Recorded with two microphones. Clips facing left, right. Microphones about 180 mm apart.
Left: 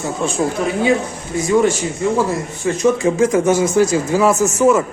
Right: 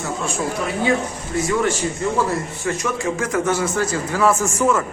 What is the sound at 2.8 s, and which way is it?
Speech, 20° left (ahead or behind).